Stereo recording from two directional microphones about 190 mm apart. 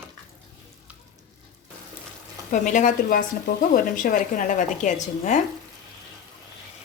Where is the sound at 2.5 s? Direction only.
40° left (ahead or behind).